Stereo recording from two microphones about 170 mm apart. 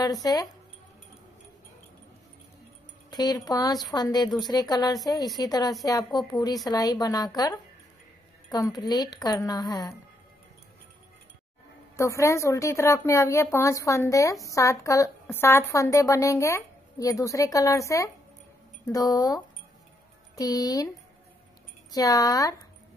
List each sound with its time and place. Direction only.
0.0 s speech: 20° left (ahead or behind)
3.1 s speech: 25° left (ahead or behind)
8.5 s speech: 20° left (ahead or behind)
12.0 s speech: 15° left (ahead or behind)
21.9 s speech: 20° left (ahead or behind)